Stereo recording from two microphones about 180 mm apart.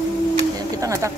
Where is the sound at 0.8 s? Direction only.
20° right (ahead or behind).